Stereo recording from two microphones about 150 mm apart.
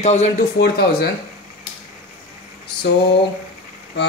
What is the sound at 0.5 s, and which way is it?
Speech, 90° left.